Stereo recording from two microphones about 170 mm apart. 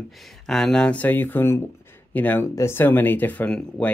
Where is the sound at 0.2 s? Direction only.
Centre (ahead or behind).